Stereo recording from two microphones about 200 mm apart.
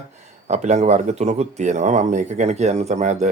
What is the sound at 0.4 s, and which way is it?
Speech, 35° right (ahead or behind).